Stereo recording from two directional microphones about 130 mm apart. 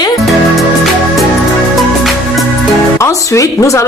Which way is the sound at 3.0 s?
25° left (ahead or behind).